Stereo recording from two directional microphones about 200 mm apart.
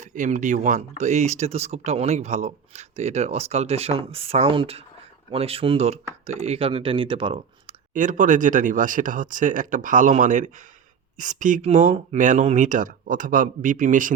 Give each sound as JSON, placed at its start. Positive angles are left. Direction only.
{"t": 0.0, "sound": "speech", "side_deg": -40}
{"t": 7.9, "sound": "speech", "side_deg": -40}